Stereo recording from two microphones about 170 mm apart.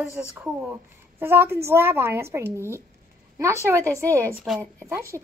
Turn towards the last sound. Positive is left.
turn(degrees=-15)  # may be behind; listen again after turning